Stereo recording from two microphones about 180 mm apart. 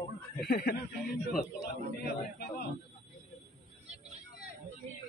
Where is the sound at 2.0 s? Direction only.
65° left (ahead or behind).